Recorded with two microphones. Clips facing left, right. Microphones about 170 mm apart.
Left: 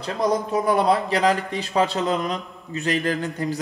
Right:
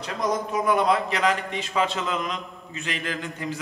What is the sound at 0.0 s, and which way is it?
A man's voice, 30° left (ahead or behind).